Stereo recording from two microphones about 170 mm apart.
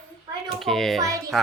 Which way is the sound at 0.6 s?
Centre (ahead or behind).